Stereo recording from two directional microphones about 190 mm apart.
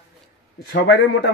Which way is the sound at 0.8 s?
70° left (ahead or behind).